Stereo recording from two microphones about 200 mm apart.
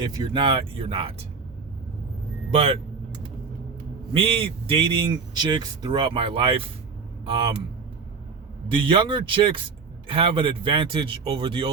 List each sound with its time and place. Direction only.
0.0 s speech: 20° right (ahead or behind)
2.5 s speech: 30° right (ahead or behind)
4.1 s speech: 25° right (ahead or behind)
8.7 s speech: 25° right (ahead or behind)